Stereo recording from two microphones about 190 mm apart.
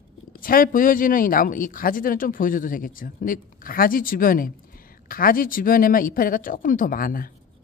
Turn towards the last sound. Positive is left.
turn(degrees=50)  # may be behind; listen again after turning